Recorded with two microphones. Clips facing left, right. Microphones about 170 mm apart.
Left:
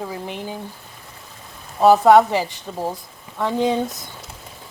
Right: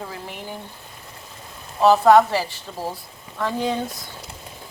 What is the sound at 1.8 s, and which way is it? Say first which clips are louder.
A woman's voice: left 2 dB; 15° left (ahead or behind).